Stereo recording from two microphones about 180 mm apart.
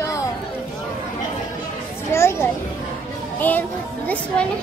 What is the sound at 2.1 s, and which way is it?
A child's voice, 15° left (ahead or behind).